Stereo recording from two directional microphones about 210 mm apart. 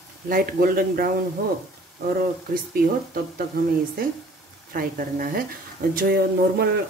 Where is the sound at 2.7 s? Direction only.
45° right (ahead or behind).